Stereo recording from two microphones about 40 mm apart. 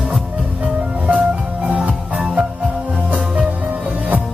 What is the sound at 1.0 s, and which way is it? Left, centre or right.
Music, right.